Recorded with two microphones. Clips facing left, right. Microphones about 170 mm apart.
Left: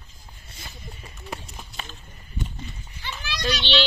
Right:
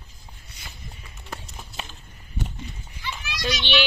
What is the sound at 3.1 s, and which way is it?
Children playing, 10° right (ahead or behind).